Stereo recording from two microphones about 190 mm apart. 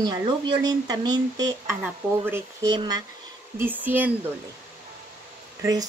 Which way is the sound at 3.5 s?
10° right (ahead or behind).